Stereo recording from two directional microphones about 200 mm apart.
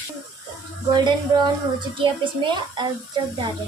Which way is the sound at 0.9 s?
20° right (ahead or behind).